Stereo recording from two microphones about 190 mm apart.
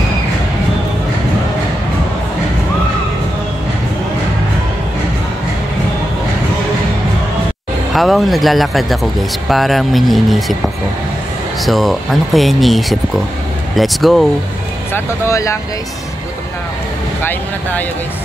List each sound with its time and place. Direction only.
7.9 s speech: centre (ahead or behind)
11.6 s speech: centre (ahead or behind)
14.9 s speech: 15° left (ahead or behind)
17.2 s speech: 10° left (ahead or behind)